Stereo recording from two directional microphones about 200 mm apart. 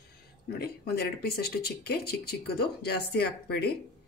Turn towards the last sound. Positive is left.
turn(degrees=55)  # may be behind; listen again after turning